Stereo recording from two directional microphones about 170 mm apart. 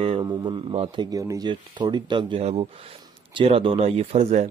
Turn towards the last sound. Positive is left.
turn(degrees=-40)  # may be behind; listen again after turning